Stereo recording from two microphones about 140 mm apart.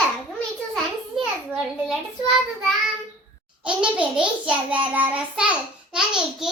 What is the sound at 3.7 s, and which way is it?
Child singing, 10° right (ahead or behind).